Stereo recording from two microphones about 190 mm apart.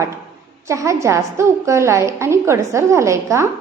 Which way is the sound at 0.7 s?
15° right (ahead or behind).